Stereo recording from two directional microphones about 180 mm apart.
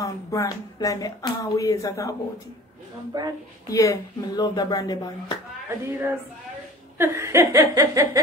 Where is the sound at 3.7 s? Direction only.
20° left (ahead or behind).